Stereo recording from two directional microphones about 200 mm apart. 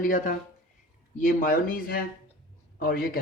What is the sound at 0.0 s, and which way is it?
Speech, 40° left (ahead or behind).